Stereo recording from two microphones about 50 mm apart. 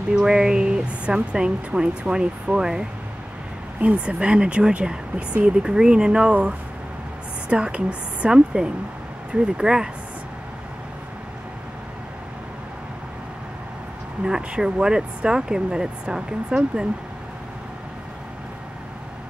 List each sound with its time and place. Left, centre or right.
0.1 s speech: centre
14.2 s speech: centre